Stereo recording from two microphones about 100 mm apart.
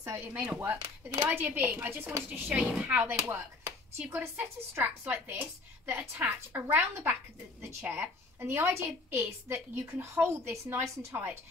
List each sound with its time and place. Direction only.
0.2 s speech: 15° right (ahead or behind)
0.6 s a woman's voice: 30° right (ahead or behind)
1.2 s speech: 15° right (ahead or behind)
3.3 s chopping: 25° right (ahead or behind)
4.7 s a woman's voice: 20° right (ahead or behind)